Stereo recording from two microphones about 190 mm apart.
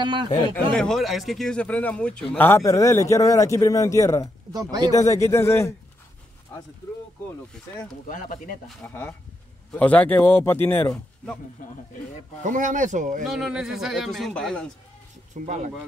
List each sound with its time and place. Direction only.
0.0 s speech: 25° right (ahead or behind)
0.7 s a man's voice: centre (ahead or behind)
4.5 s speech: 20° right (ahead or behind)
4.9 s a man's voice: 15° left (ahead or behind)
8.1 s speech: 45° left (ahead or behind)
8.8 s a man's voice: 10° left (ahead or behind)
12.4 s speech: 40° right (ahead or behind)
13.3 s speech: centre (ahead or behind)
15.3 s speech: 40° right (ahead or behind)